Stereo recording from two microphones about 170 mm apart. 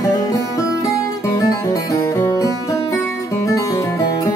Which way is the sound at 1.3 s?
20° left (ahead or behind).